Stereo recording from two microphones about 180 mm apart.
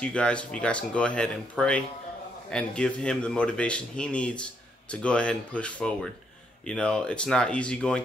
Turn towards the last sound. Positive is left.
turn(degrees=5)  # may be behind; listen again after turning